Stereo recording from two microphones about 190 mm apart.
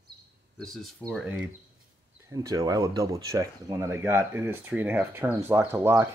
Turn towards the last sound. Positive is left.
turn(degrees=-15)  # may be behind; listen again after turning